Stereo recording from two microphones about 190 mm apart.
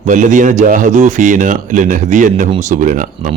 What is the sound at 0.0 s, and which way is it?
Speech, 40° right (ahead or behind).